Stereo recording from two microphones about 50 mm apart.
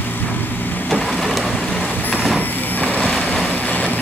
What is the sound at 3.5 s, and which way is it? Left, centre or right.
Vehicle, left.